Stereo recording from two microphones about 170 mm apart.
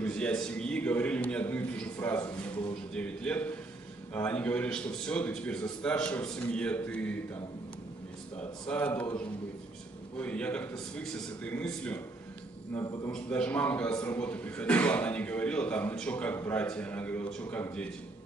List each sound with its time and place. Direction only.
0.0 s a man's voice: 5° left (ahead or behind)
8.4 s a man's voice: 5° left (ahead or behind)
10.1 s a man's voice: 10° left (ahead or behind)
12.7 s a man's voice: 20° left (ahead or behind)
13.1 s a man's voice: 5° left (ahead or behind)